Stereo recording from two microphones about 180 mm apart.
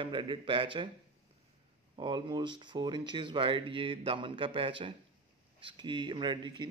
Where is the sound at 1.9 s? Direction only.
25° right (ahead or behind).